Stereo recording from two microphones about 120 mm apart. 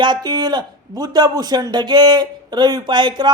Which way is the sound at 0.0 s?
35° right (ahead or behind).